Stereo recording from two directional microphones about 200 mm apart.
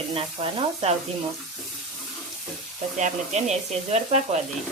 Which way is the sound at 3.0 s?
35° right (ahead or behind).